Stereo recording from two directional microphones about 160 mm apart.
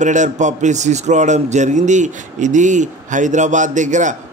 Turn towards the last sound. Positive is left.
turn(degrees=-50)  # may be behind; listen again after turning